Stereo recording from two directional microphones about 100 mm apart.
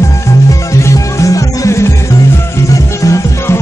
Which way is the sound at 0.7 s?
30° left (ahead or behind).